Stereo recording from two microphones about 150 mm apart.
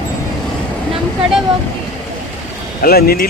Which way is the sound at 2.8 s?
90° left.